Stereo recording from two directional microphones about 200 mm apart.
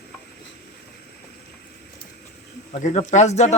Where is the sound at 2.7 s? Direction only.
35° left (ahead or behind).